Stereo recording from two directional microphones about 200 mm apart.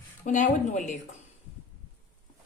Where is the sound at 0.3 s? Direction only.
40° left (ahead or behind).